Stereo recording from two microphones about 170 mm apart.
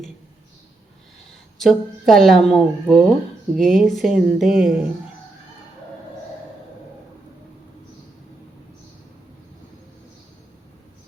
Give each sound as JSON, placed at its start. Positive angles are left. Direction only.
{"t": 1.5, "sound": "a woman's voice", "side_deg": 0}